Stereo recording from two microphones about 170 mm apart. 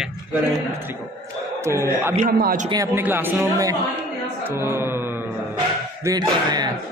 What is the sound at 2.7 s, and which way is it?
Speech, 15° right (ahead or behind).